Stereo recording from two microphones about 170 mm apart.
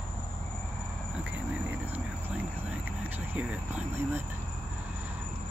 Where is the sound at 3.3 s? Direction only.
10° right (ahead or behind).